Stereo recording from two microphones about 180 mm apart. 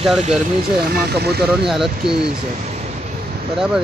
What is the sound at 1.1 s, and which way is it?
Speech, 60° right (ahead or behind).